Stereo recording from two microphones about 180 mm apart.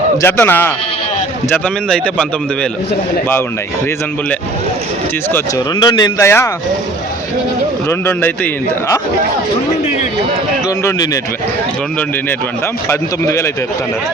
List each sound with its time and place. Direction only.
0.2 s speech: 15° left (ahead or behind)
5.8 s speech: 20° left (ahead or behind)
7.9 s speech: 15° left (ahead or behind)
10.8 s speech: 20° left (ahead or behind)
12.9 s speech: 15° left (ahead or behind)